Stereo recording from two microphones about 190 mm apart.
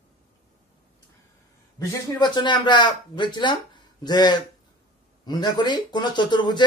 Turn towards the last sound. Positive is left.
turn(degrees=25)  # may be behind; listen again after turning